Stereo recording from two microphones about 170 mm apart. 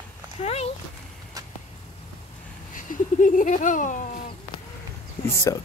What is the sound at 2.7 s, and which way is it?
Speech, 50° left (ahead or behind).